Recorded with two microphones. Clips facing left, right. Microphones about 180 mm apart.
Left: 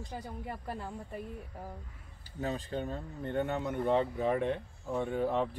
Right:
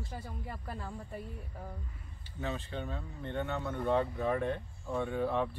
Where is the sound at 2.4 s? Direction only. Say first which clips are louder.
Left 3 dB; 40° left (ahead or behind).